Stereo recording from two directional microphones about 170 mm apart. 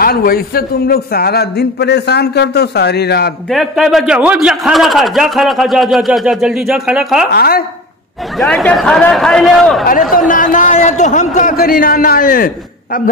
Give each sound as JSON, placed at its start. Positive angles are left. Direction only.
{"t": 0.0, "sound": "a man's voice", "side_deg": 60}
{"t": 3.4, "sound": "a man's voice", "side_deg": 0}
{"t": 7.3, "sound": "speech", "side_deg": 65}
{"t": 8.4, "sound": "a man's voice", "side_deg": 5}
{"t": 10.2, "sound": "a man's voice", "side_deg": 50}